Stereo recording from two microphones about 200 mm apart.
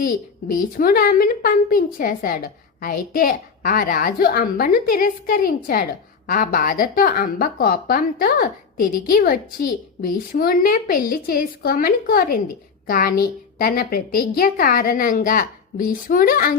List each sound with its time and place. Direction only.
0.0 s a woman's voice: 45° left (ahead or behind)